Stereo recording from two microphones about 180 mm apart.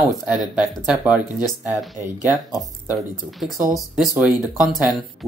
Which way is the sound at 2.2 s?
20° left (ahead or behind).